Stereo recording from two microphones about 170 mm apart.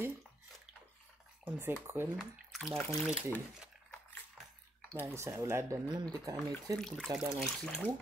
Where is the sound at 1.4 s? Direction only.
15° right (ahead or behind).